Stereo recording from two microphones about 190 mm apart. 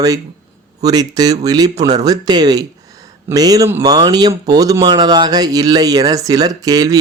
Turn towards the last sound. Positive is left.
turn(degrees=-20)  # may be behind; listen again after turning